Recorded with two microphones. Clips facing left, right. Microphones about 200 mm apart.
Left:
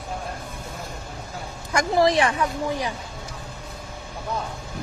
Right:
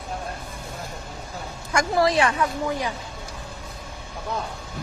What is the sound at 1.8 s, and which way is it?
Speech, 20° left (ahead or behind).